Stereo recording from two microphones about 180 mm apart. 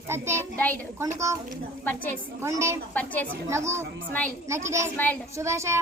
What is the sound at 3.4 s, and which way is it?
A woman's voice, 15° right (ahead or behind).